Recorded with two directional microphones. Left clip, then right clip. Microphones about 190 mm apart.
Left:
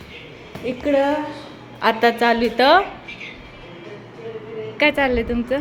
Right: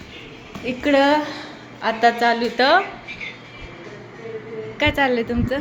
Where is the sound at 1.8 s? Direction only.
20° left (ahead or behind).